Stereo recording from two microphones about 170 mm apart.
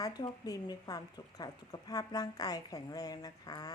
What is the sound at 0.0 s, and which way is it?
A woman's voice, 20° left (ahead or behind).